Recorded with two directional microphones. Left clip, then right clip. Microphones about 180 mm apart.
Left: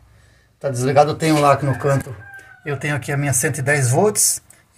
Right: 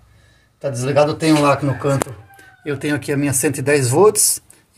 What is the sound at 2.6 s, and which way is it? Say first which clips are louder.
Speech: right 2 dB; 25° right (ahead or behind).